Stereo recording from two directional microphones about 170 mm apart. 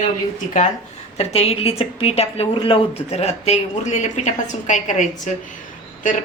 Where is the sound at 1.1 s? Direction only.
40° left (ahead or behind).